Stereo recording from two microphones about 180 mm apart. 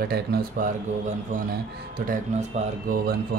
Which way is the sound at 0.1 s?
55° right (ahead or behind).